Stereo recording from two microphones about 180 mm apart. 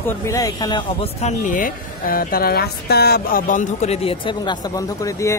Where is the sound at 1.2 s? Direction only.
40° left (ahead or behind).